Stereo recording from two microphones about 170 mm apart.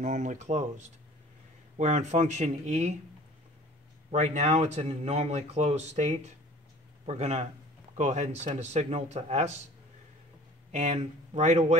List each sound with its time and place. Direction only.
0.0 s speech: 45° right (ahead or behind)
4.1 s speech: 45° right (ahead or behind)
10.7 s speech: 40° right (ahead or behind)